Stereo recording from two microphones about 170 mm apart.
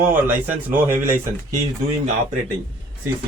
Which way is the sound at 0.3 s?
10° right (ahead or behind).